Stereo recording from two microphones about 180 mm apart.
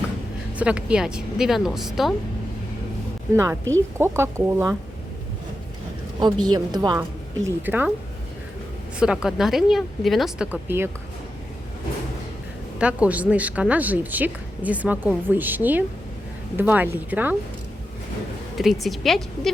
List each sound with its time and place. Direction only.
0.5 s speech: 5° right (ahead or behind)
3.3 s a woman's voice: 15° right (ahead or behind)
6.1 s a woman's voice: 25° right (ahead or behind)
7.4 s a woman's voice: 10° right (ahead or behind)
9.0 s speech: 5° right (ahead or behind)
12.8 s a woman's voice: 10° right (ahead or behind)
18.5 s speech: centre (ahead or behind)